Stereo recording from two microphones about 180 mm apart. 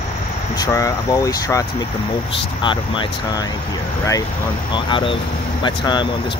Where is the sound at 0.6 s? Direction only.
20° left (ahead or behind).